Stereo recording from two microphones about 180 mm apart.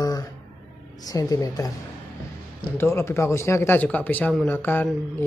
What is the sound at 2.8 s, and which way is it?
Speech, 15° left (ahead or behind).